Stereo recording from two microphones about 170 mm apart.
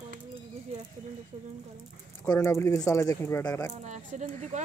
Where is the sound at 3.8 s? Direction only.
45° right (ahead or behind).